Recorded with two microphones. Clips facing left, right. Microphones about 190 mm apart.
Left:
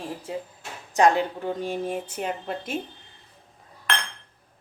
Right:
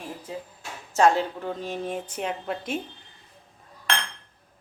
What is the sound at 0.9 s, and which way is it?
Speech, 15° left (ahead or behind).